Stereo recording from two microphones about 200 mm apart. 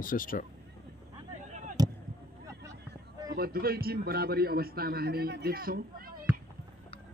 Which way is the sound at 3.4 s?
50° right (ahead or behind).